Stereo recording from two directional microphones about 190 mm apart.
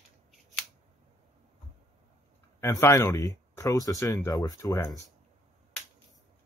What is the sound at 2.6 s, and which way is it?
Speech, 15° left (ahead or behind).